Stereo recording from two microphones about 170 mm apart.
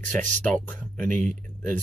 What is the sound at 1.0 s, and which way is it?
Speech, 50° right (ahead or behind).